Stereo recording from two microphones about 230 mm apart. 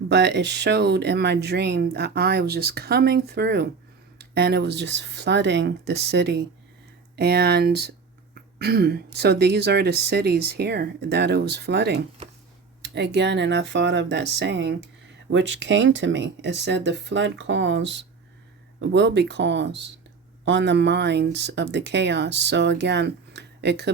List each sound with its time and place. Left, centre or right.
0.1 s speech: right